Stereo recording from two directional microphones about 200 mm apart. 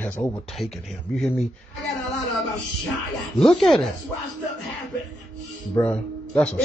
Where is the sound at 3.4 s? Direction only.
Centre (ahead or behind).